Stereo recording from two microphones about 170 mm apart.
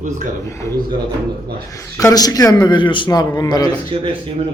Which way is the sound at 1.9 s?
20° left (ahead or behind).